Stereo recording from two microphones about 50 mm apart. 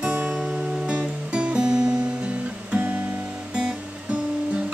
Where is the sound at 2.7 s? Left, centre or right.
Right.